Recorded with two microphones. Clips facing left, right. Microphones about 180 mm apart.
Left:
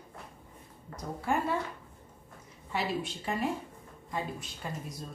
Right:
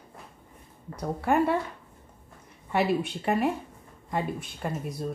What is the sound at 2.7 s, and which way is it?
Speech, 60° right (ahead or behind).